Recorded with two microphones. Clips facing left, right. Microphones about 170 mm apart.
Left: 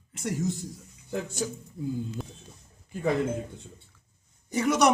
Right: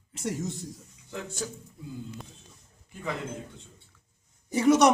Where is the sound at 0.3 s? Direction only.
Centre (ahead or behind).